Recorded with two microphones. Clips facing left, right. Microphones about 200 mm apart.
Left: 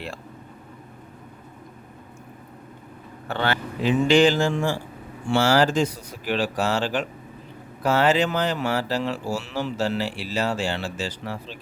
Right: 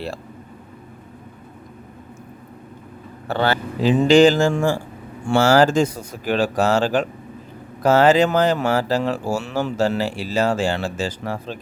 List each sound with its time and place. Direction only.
3.2 s speech: 35° right (ahead or behind)